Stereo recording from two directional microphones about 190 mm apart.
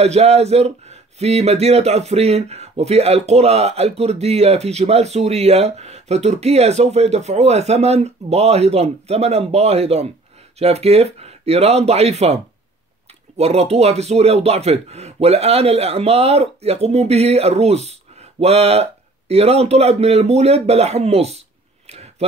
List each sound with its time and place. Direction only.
0.0 s speech: 35° right (ahead or behind)
13.4 s speech: 35° right (ahead or behind)